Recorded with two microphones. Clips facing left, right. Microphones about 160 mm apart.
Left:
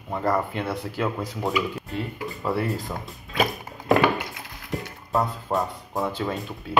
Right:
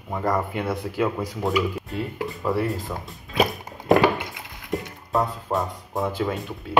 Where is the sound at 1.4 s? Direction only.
Centre (ahead or behind).